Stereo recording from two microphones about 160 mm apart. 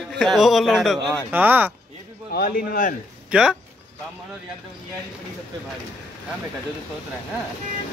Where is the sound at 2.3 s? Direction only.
70° left (ahead or behind).